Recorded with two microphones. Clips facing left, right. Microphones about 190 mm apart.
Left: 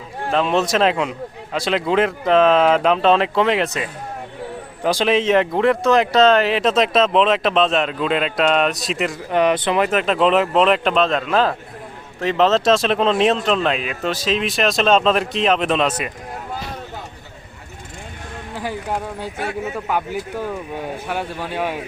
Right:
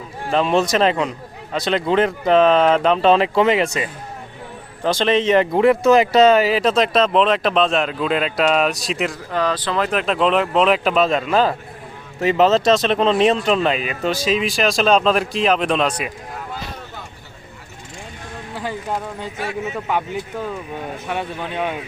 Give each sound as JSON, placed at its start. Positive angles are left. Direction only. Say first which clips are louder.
{"t": 0.3, "sound": "speech", "louder": "right 1 dB", "side_deg": 0}
{"t": 9.3, "sound": "speech", "louder": "left 5 dB", "side_deg": 20}
{"t": 9.9, "sound": "speech", "louder": "even", "side_deg": 0}
{"t": 18.5, "sound": "speech", "louder": "even", "side_deg": 10}